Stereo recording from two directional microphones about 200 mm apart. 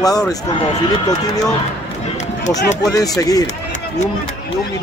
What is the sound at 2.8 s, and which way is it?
Speech, 20° left (ahead or behind).